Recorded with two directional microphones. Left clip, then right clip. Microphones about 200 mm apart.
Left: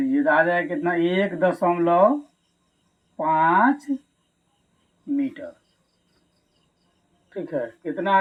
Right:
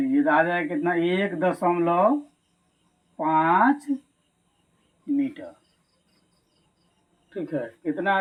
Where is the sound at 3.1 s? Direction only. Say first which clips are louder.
Left 2 dB; 35° left (ahead or behind).